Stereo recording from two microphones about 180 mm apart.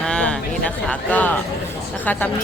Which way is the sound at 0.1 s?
5° left (ahead or behind).